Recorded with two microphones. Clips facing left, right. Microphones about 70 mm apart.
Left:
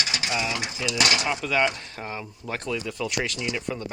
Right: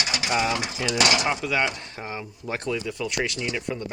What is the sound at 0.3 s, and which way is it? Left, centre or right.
Speech, right.